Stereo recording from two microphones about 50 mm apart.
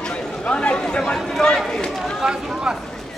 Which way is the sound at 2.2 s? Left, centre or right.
Centre.